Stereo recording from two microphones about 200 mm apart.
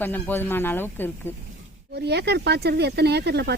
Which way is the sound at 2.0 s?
55° right (ahead or behind).